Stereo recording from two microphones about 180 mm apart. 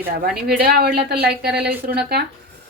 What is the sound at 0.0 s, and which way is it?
A woman's voice, 55° right (ahead or behind).